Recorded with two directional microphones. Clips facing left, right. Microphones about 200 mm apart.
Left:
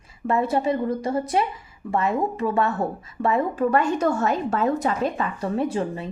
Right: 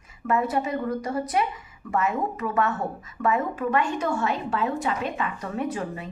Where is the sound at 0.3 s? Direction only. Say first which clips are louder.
Left 3 dB; 30° left (ahead or behind).